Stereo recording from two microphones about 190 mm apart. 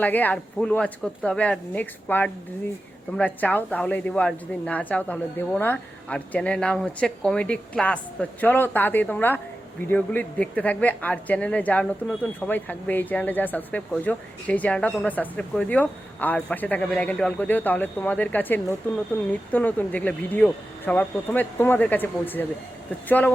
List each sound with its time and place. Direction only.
0.0 s speech: 10° left (ahead or behind)